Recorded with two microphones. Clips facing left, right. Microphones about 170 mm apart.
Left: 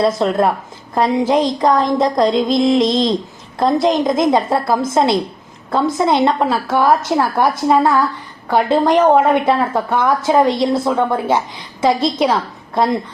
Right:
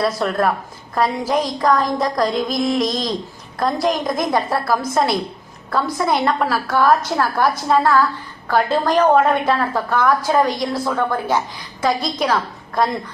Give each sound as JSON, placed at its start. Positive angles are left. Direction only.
{"t": 0.0, "sound": "a woman's voice", "side_deg": 25}